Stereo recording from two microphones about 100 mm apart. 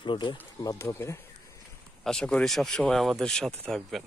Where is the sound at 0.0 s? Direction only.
50° left (ahead or behind); by 1.1 s 30° left (ahead or behind).